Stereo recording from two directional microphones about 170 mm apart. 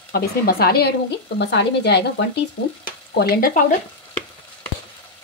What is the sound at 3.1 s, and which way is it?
Speech, 70° left (ahead or behind).